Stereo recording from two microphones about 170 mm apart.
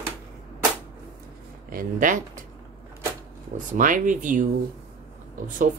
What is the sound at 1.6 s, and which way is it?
Speech, 55° right (ahead or behind).